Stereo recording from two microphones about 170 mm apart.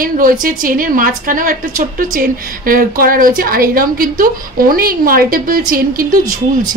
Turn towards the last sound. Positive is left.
turn(degrees=-55)  # may be behind; listen again after turning